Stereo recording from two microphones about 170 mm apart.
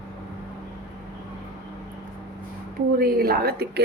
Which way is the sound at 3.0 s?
65° right (ahead or behind).